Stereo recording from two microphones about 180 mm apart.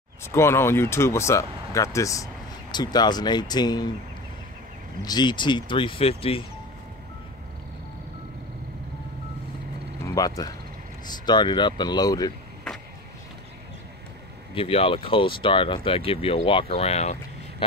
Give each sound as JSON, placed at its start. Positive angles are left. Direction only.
{"t": 0.2, "sound": "speech", "side_deg": 15}
{"t": 5.0, "sound": "speech", "side_deg": 25}
{"t": 10.0, "sound": "speech", "side_deg": 20}
{"t": 14.5, "sound": "speech", "side_deg": 30}